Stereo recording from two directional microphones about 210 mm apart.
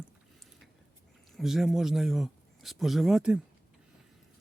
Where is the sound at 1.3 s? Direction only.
Centre (ahead or behind).